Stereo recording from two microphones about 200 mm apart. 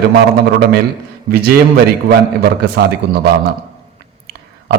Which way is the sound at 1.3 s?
50° right (ahead or behind).